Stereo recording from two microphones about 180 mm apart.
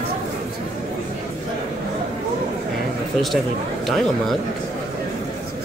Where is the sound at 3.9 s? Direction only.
Centre (ahead or behind).